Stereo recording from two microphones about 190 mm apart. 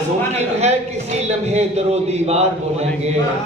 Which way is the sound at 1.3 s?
35° right (ahead or behind).